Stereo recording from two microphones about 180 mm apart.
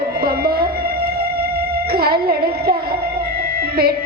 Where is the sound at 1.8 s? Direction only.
60° right (ahead or behind).